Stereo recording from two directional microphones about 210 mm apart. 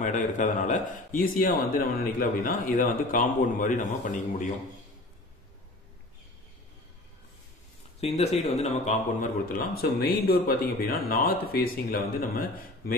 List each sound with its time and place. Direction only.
0.0 s a man's voice: 35° left (ahead or behind)
8.0 s speech: 30° left (ahead or behind)